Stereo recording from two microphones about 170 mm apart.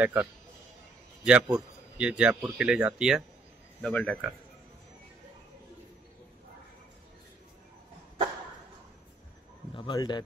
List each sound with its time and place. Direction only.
0.0 s a man's voice: 10° right (ahead or behind)
3.8 s a man's voice: 5° left (ahead or behind)
9.8 s a man's voice: 25° left (ahead or behind)